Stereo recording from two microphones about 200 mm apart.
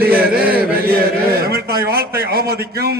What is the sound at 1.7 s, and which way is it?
Speech, 50° right (ahead or behind).